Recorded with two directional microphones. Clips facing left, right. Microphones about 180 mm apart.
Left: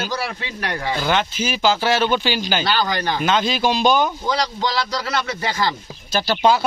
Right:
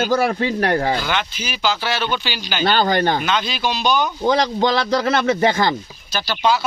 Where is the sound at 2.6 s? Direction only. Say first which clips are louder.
Right 4 dB; 50° right (ahead or behind).